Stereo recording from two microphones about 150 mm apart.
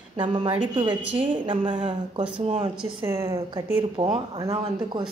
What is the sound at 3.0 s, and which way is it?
A woman's voice, 25° right (ahead or behind).